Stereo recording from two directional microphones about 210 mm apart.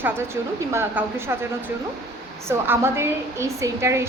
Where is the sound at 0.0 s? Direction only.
10° right (ahead or behind).